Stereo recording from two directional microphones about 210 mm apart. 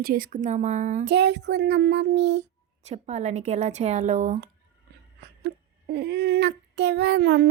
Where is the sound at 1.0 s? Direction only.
55° right (ahead or behind).